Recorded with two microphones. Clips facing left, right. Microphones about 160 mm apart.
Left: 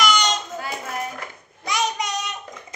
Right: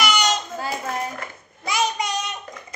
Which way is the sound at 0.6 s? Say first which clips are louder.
Right 2 dB; 30° right (ahead or behind).